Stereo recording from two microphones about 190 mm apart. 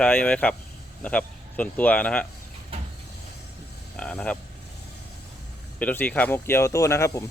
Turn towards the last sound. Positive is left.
turn(degrees=15)  # may be behind; listen again after turning